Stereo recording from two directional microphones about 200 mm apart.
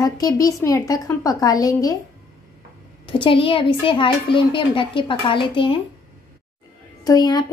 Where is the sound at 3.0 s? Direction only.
25° left (ahead or behind).